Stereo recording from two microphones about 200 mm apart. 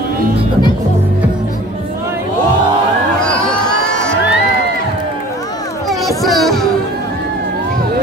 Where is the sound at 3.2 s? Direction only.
5° left (ahead or behind).